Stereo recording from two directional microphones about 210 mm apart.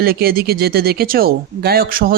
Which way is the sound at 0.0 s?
45° right (ahead or behind).